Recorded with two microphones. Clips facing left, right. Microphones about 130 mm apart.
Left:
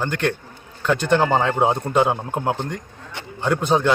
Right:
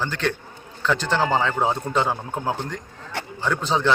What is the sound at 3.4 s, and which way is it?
Speech, 15° left (ahead or behind).